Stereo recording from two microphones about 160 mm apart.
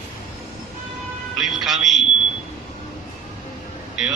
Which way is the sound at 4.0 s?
5° right (ahead or behind).